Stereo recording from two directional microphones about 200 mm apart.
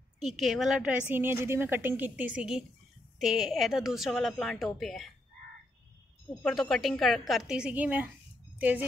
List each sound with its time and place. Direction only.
0.2 s a woman's voice: centre (ahead or behind)
6.4 s a woman's voice: centre (ahead or behind)